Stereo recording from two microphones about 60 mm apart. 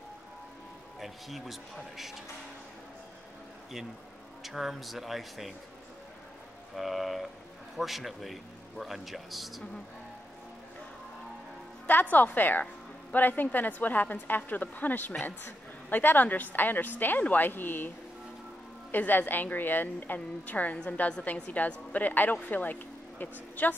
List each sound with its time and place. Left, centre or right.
1.0 s a man's voice: centre
4.4 s a man's voice: centre
6.7 s a man's voice: centre
11.9 s a woman's voice: left